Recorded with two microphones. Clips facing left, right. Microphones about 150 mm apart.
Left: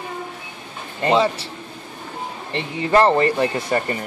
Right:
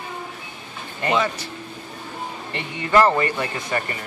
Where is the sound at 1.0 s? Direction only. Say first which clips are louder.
Left 4 dB; 30° left (ahead or behind).